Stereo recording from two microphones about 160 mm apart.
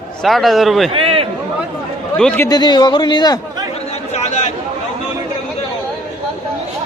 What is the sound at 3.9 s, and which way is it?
Chatter, 45° left (ahead or behind).